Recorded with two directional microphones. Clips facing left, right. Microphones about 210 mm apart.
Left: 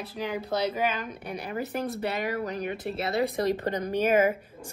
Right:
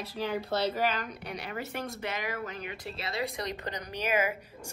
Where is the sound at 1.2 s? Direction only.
35° left (ahead or behind).